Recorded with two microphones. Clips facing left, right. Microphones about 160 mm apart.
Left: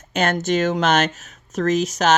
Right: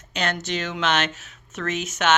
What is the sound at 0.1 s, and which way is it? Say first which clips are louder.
Speech: left 7 dB; 50° left (ahead or behind).